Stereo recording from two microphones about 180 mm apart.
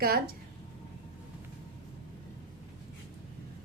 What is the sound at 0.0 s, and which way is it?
Speech, 60° right (ahead or behind).